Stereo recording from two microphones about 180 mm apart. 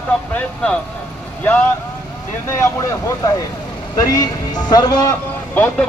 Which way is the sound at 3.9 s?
20° left (ahead or behind).